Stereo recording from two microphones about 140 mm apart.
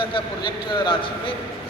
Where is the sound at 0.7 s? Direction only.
35° left (ahead or behind).